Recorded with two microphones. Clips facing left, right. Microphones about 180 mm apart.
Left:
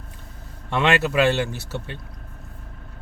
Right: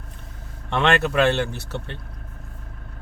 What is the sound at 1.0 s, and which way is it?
Speech, 55° right (ahead or behind).